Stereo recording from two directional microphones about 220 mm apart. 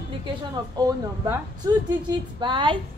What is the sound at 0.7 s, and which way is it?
A woman's voice, 15° right (ahead or behind).